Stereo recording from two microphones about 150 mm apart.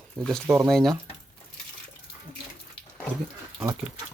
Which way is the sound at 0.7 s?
Centre (ahead or behind).